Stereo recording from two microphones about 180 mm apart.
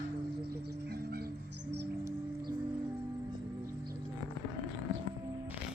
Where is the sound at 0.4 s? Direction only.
60° right (ahead or behind).